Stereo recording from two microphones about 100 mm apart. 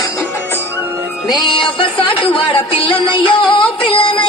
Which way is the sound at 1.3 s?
55° left (ahead or behind).